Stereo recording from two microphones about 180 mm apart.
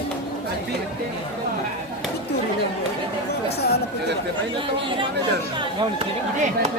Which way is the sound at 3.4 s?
65° left (ahead or behind).